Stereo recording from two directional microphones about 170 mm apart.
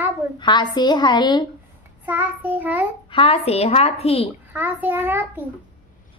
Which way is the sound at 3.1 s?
35° left (ahead or behind).